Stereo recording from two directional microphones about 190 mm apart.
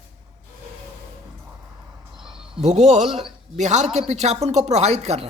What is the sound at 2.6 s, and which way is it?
A man's voice, 35° right (ahead or behind).